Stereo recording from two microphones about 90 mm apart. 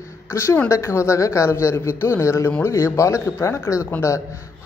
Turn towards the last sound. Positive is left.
turn(degrees=35)  # may be behind; listen again after turning